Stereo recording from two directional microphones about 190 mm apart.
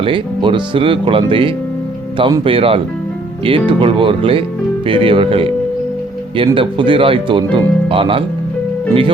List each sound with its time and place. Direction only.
0.0 s speech: 25° right (ahead or behind)